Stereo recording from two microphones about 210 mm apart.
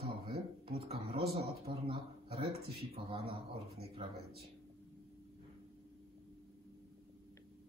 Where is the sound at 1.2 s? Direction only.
30° right (ahead or behind).